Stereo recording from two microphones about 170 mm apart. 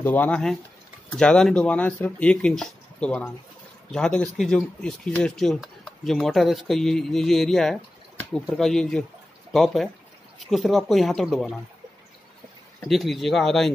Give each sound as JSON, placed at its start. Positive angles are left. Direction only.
{"t": 0.0, "sound": "speech", "side_deg": 10}
{"t": 12.8, "sound": "speech", "side_deg": 0}